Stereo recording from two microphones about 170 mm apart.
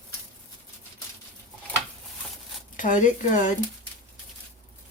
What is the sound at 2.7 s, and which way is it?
Speech, 50° left (ahead or behind).